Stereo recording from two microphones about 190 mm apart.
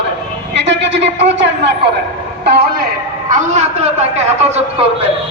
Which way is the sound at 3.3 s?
35° right (ahead or behind).